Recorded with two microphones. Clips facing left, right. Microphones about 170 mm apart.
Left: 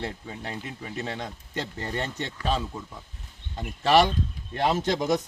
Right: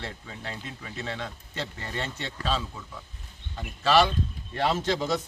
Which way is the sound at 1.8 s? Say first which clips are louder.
Left 5 dB; 45° left (ahead or behind).